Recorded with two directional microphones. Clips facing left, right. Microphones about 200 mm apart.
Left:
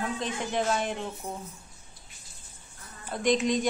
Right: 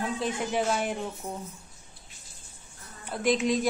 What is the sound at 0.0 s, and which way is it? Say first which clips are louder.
Speech: right 2 dB; 10° right (ahead or behind).